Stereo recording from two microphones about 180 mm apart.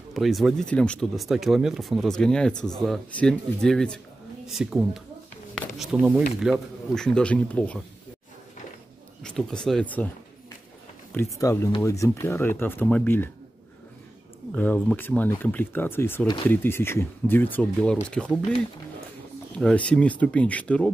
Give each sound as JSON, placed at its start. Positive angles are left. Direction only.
{"t": 0.1, "sound": "speech", "side_deg": 0}
{"t": 9.2, "sound": "speech", "side_deg": 5}
{"t": 11.3, "sound": "speech", "side_deg": 15}
{"t": 14.5, "sound": "speech", "side_deg": 10}
{"t": 19.6, "sound": "speech", "side_deg": 5}